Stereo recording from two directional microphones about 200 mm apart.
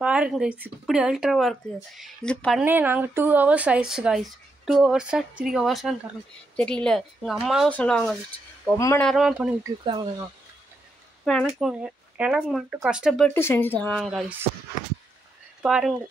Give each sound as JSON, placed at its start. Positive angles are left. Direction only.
{"t": 0.0, "sound": "speech", "side_deg": -5}
{"t": 2.6, "sound": "speech", "side_deg": -10}
{"t": 8.7, "sound": "speech", "side_deg": 15}
{"t": 9.0, "sound": "speech", "side_deg": 0}
{"t": 9.6, "sound": "speech", "side_deg": -20}
{"t": 11.2, "sound": "speech", "side_deg": 0}
{"t": 13.3, "sound": "speech", "side_deg": 10}
{"t": 15.6, "sound": "speech", "side_deg": 0}